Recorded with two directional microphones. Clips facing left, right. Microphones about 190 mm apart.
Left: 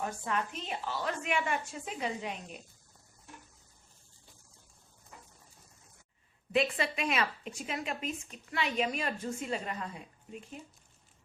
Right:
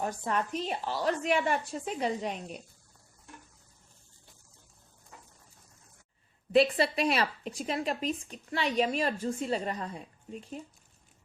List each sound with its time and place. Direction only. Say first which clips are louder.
0.0 s a woman's voice: right 3 dB; 40° right (ahead or behind)
6.5 s a woman's voice: right 6 dB; 35° right (ahead or behind)